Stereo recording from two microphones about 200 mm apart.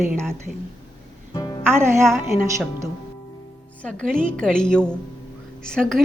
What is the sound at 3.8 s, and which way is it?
A woman's voice, 5° left (ahead or behind).